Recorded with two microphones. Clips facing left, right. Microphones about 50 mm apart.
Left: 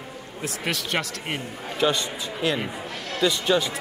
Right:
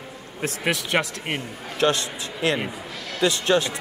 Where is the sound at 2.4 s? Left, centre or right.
Centre.